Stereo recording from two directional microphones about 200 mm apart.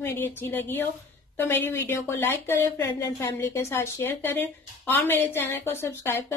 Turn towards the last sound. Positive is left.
turn(degrees=10)  # may be behind; listen again after turning